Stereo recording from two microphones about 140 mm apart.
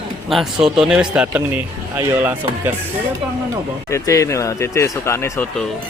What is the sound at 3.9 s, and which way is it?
Speech, 20° left (ahead or behind).